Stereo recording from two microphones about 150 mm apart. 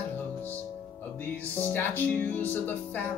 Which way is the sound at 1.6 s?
15° left (ahead or behind).